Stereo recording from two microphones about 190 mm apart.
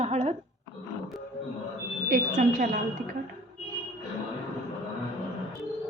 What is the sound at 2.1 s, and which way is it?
Speech, 45° right (ahead or behind).